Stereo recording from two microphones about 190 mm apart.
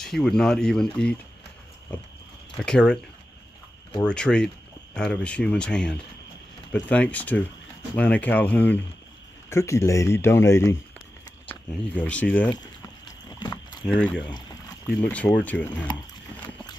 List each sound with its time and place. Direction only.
0.0 s speech: centre (ahead or behind)
2.5 s speech: 5° left (ahead or behind)
4.0 s speech: 5° left (ahead or behind)
13.3 s rowboat: 20° left (ahead or behind)
13.8 s speech: 5° left (ahead or behind)
15.9 s speech: 20° left (ahead or behind)